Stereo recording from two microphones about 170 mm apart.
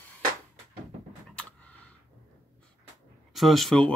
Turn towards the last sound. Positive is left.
turn(degrees=5)  # may be behind; listen again after turning